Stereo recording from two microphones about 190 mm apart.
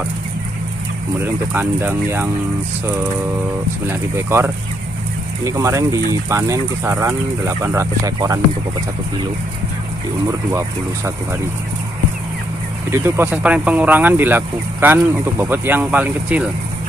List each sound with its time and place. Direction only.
1.2 s speech: 10° right (ahead or behind)
3.9 s speech: 15° right (ahead or behind)
12.9 s speech: 15° right (ahead or behind)